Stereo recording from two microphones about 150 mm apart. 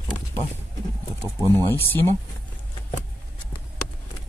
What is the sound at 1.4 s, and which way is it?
Speech, 25° right (ahead or behind).